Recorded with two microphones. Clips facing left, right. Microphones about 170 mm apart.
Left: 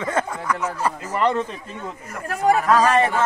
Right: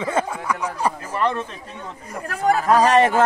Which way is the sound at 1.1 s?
15° left (ahead or behind).